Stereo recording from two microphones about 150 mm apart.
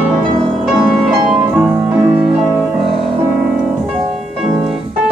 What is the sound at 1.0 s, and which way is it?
Music, 5° right (ahead or behind).